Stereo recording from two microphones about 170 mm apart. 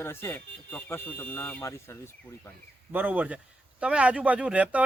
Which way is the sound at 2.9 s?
10° right (ahead or behind).